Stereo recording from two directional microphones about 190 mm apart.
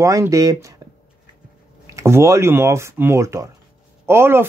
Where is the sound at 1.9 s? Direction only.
15° right (ahead or behind).